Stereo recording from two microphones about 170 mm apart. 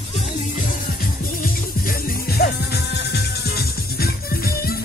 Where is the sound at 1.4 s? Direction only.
60° left (ahead or behind).